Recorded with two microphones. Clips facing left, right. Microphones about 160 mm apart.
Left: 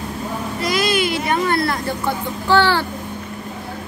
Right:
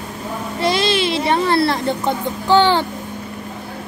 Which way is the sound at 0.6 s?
30° right (ahead or behind).